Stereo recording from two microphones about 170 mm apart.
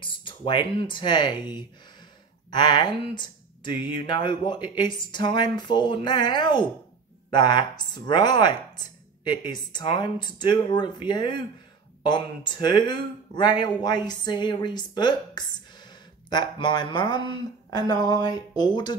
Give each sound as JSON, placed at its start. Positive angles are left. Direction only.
{"t": 0.0, "sound": "speech", "side_deg": 30}